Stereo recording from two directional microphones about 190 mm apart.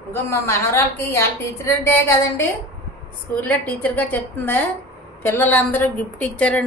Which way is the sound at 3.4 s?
10° left (ahead or behind).